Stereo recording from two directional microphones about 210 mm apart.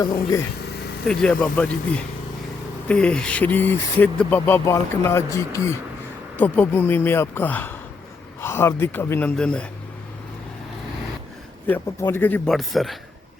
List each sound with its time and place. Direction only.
0.0 s speech: 15° left (ahead or behind)
1.0 s speech: 5° left (ahead or behind)
2.9 s speech: 5° left (ahead or behind)
11.6 s speech: 10° left (ahead or behind)